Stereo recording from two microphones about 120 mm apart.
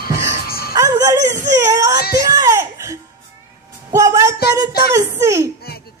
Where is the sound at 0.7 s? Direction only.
30° right (ahead or behind).